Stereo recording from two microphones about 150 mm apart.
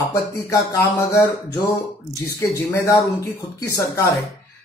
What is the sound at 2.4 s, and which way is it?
Speech, 20° left (ahead or behind).